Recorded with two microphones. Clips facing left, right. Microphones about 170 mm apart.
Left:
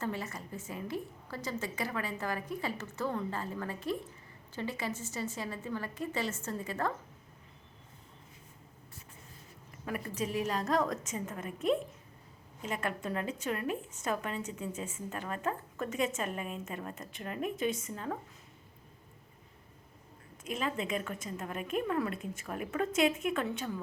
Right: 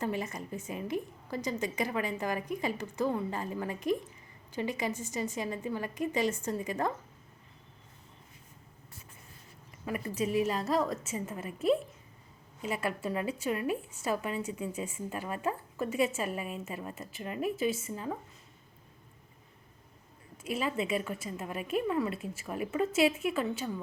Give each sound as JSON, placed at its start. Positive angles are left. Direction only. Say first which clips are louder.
{"t": 0.0, "sound": "a woman's voice", "louder": "right 3 dB", "side_deg": -15}
{"t": 9.8, "sound": "a woman's voice", "louder": "right 3 dB", "side_deg": -5}
{"t": 12.6, "sound": "a woman's voice", "louder": "right 2 dB", "side_deg": -10}
{"t": 20.4, "sound": "a woman's voice", "louder": "right 3 dB", "side_deg": -10}